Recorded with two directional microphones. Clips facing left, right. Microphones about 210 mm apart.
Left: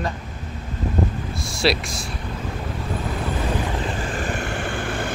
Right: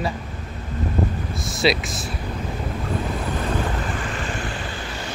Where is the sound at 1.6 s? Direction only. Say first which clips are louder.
Right 1 dB; centre (ahead or behind).